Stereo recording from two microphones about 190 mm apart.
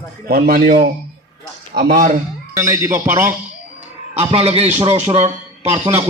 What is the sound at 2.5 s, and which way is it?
Speech, 15° right (ahead or behind).